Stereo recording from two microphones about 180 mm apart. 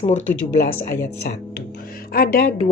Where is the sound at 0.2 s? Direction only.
60° left (ahead or behind).